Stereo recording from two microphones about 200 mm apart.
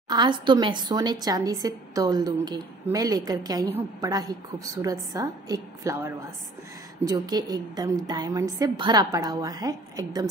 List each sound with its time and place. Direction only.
0.1 s a woman's voice: 20° right (ahead or behind)